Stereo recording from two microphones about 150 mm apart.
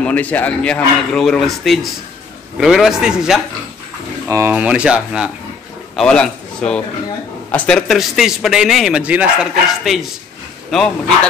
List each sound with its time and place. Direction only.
0.0 s a man's voice: 10° left (ahead or behind)
4.3 s speech: 20° right (ahead or behind)
4.6 s a man's voice: 5° right (ahead or behind)